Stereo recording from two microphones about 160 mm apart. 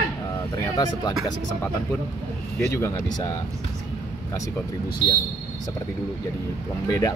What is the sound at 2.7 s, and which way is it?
Train, 15° left (ahead or behind).